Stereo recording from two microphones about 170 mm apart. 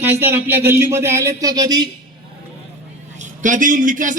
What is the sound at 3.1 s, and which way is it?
A man's voice, 50° right (ahead or behind).